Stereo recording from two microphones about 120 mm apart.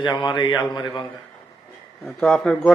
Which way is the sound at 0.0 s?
40° left (ahead or behind).